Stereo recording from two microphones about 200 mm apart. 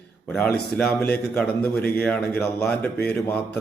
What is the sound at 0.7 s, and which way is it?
A man's voice, 5° left (ahead or behind).